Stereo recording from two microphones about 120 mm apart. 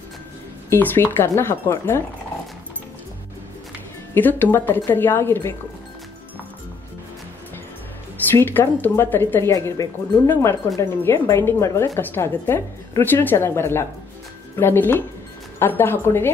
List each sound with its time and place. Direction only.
0.7 s speech: 15° left (ahead or behind)
4.1 s a woman's voice: 15° left (ahead or behind)
8.3 s a woman's voice: 15° left (ahead or behind)